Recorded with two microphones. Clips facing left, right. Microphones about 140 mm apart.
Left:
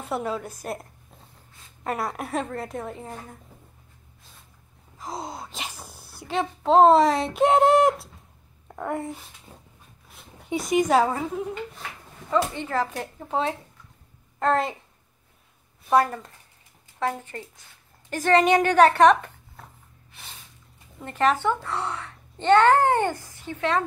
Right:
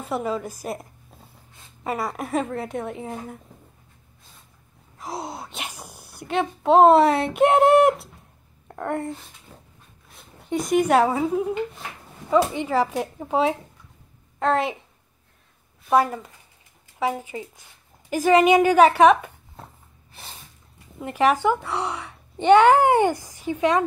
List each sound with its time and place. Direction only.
0.0 s speech: centre (ahead or behind)
1.9 s speech: centre (ahead or behind)
4.9 s sneeze: 5° right (ahead or behind)
6.2 s speech: 5° right (ahead or behind)
9.5 s dog: 20° left (ahead or behind)
10.8 s a child's voice: 5° right (ahead or behind)
15.9 s a child's voice: 5° right (ahead or behind)
21.0 s a child's voice: 10° right (ahead or behind)